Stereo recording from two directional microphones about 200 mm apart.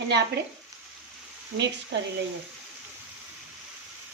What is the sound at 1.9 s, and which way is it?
Speech, 60° right (ahead or behind).